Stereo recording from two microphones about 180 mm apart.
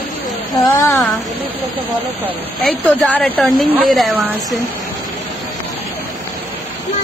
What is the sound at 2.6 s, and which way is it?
Speech, centre (ahead or behind).